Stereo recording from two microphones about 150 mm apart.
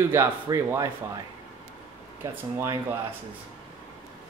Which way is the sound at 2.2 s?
20° right (ahead or behind).